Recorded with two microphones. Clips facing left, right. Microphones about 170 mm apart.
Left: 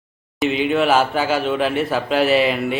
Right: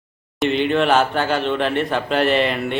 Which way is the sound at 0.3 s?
5° left (ahead or behind).